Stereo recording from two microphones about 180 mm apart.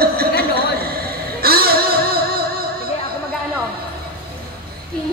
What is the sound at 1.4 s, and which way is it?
Music, 55° right (ahead or behind).